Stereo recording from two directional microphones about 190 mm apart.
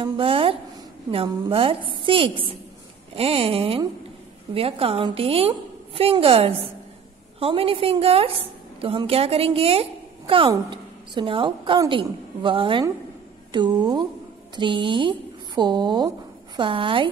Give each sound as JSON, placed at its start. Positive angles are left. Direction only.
{"t": 0.0, "sound": "a woman's voice", "side_deg": -30}